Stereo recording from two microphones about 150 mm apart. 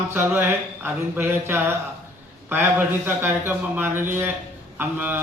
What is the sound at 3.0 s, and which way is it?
Speech, 15° right (ahead or behind).